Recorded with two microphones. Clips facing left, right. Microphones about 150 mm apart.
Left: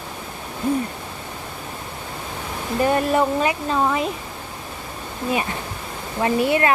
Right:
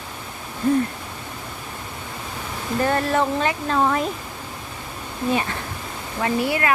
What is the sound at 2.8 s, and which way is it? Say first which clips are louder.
Speech: left 2 dB; 15° left (ahead or behind).